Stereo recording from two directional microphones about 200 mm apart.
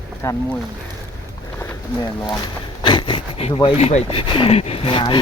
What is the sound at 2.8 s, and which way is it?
Speech, 25° left (ahead or behind).